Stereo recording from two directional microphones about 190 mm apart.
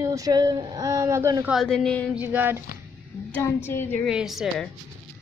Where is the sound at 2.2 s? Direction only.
10° right (ahead or behind).